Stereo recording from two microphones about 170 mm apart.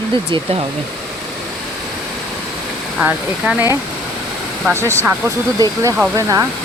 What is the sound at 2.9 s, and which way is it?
Speech, 10° right (ahead or behind).